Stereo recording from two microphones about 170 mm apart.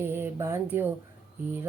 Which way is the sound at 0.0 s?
15° right (ahead or behind).